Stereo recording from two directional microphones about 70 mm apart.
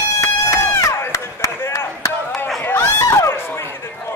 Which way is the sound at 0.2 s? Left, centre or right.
Left.